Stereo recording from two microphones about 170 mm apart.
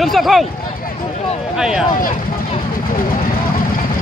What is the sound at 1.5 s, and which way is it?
Speech, 5° right (ahead or behind).